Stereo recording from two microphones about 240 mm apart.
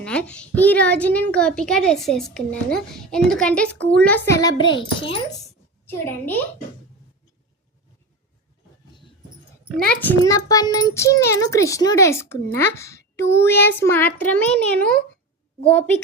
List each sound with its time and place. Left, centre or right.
0.0 s a woman's voice: centre; by 5.2 s left
5.9 s speech: centre
9.7 s speech: centre